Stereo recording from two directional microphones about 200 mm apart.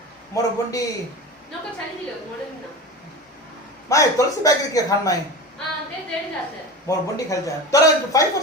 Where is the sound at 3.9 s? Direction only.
15° left (ahead or behind).